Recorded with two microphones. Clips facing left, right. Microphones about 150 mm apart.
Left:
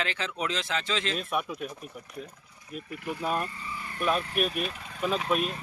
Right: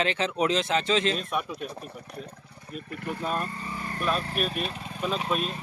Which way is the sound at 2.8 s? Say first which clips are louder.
Right 1 dB; 50° right (ahead or behind).